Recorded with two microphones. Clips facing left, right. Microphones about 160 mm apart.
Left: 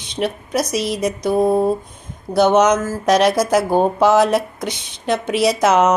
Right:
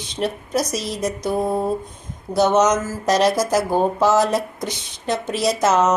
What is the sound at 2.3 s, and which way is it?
Speech, centre (ahead or behind).